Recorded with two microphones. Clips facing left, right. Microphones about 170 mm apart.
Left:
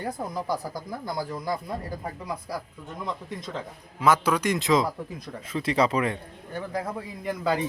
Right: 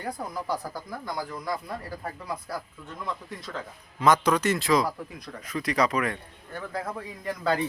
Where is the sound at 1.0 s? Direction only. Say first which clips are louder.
Left 3 dB; 30° left (ahead or behind).